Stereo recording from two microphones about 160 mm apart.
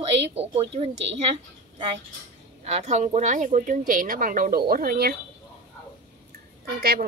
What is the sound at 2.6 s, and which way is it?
Speech, 45° right (ahead or behind).